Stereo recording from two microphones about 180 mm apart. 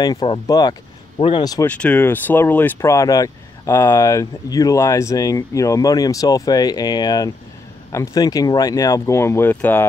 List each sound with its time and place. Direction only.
0.0 s speech: 25° left (ahead or behind)
1.7 s speech: 10° left (ahead or behind)